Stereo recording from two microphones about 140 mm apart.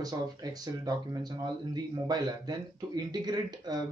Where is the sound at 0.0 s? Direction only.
25° right (ahead or behind).